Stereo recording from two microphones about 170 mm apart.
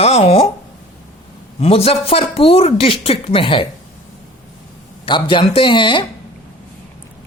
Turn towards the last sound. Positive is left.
turn(degrees=30)  # may be behind; listen again after turning